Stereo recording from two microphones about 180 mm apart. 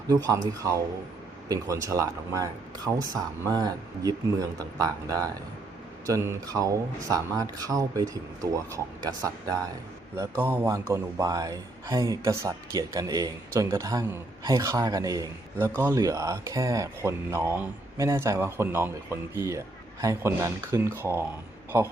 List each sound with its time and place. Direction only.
0.1 s speech: 20° right (ahead or behind)
1.5 s a man's voice: 20° right (ahead or behind)